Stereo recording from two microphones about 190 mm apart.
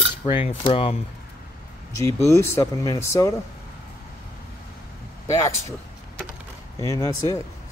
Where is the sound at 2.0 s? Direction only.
15° left (ahead or behind).